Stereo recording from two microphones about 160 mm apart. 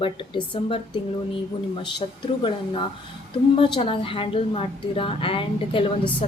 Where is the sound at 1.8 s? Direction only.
30° left (ahead or behind).